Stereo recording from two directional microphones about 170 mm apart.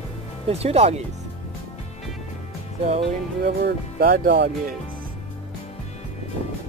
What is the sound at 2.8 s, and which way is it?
Speech, 40° right (ahead or behind).